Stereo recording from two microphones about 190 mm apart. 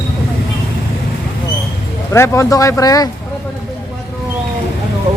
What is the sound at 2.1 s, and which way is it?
Speech, 15° left (ahead or behind).